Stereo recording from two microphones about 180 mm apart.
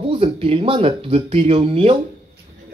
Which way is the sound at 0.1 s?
30° right (ahead or behind).